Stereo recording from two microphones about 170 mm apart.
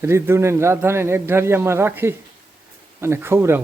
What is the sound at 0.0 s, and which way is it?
A man's voice, 15° right (ahead or behind).